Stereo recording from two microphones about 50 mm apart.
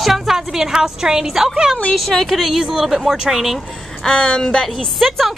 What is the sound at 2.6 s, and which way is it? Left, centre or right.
A woman's voice, centre.